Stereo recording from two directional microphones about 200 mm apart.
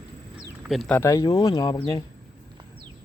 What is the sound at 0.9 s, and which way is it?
Speech, 15° left (ahead or behind).